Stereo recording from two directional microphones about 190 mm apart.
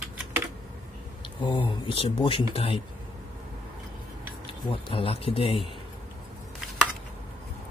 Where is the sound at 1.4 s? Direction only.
25° left (ahead or behind).